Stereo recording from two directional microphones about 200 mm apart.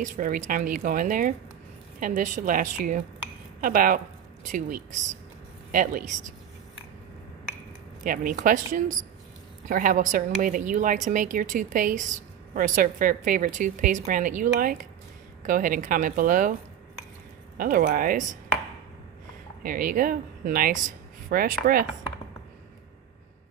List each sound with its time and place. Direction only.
0.0 s a woman's voice: 40° right (ahead or behind)
8.0 s a woman's voice: 45° right (ahead or behind)
17.6 s speech: 45° right (ahead or behind)
19.6 s speech: 45° right (ahead or behind)